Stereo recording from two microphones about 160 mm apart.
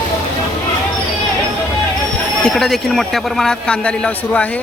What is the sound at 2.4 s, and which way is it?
A man's voice, centre (ahead or behind).